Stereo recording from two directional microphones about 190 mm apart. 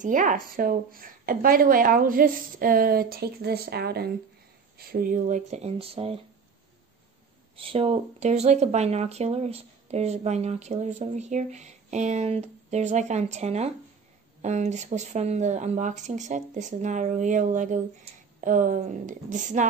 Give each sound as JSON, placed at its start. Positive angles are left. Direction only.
{"t": 0.0, "sound": "a woman's voice", "side_deg": -45}
{"t": 7.5, "sound": "speech", "side_deg": -30}